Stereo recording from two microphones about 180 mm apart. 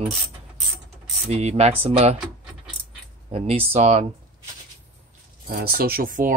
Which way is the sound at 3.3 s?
35° right (ahead or behind).